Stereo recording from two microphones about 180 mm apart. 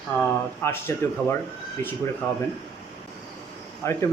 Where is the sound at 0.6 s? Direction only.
10° left (ahead or behind).